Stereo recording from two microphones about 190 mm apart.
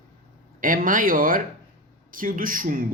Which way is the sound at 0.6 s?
45° right (ahead or behind).